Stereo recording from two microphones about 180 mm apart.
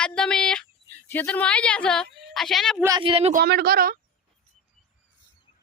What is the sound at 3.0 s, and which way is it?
Speech, 30° right (ahead or behind).